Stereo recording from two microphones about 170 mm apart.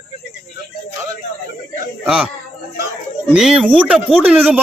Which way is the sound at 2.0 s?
5° right (ahead or behind).